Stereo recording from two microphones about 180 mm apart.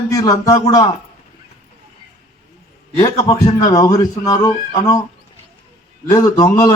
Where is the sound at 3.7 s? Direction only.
20° left (ahead or behind).